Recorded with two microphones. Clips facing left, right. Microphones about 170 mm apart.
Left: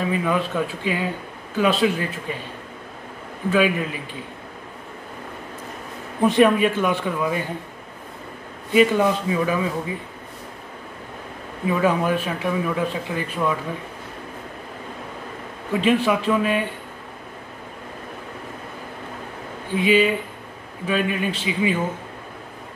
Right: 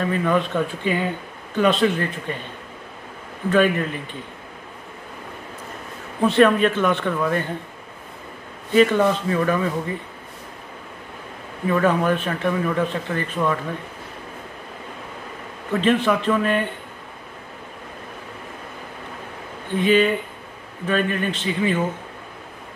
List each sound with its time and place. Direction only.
0.0 s a man's voice: 5° left (ahead or behind)
3.4 s a man's voice: 5° left (ahead or behind)
6.2 s a man's voice: 15° left (ahead or behind)
8.7 s a man's voice: 10° left (ahead or behind)
11.6 s a man's voice: 10° left (ahead or behind)
15.7 s a man's voice: 10° left (ahead or behind)
19.7 s a man's voice: 10° left (ahead or behind)